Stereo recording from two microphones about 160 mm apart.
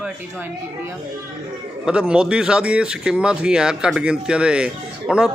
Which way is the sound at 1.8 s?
5° right (ahead or behind).